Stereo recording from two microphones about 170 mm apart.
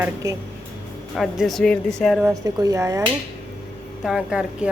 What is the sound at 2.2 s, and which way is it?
Speech, 20° right (ahead or behind).